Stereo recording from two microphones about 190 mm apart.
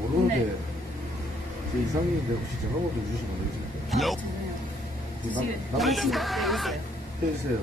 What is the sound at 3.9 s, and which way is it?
Speech, centre (ahead or behind).